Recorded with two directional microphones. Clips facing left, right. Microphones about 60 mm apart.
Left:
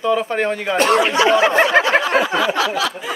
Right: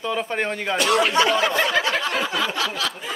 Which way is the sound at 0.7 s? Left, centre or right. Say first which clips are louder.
Left 3 dB; left.